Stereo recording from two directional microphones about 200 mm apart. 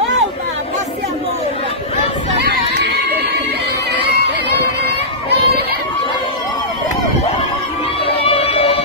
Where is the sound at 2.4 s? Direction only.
60° right (ahead or behind).